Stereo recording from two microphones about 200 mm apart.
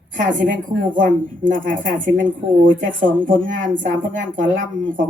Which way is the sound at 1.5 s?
40° right (ahead or behind).